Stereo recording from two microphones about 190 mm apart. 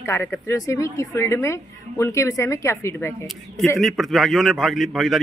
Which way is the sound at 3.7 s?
Centre (ahead or behind).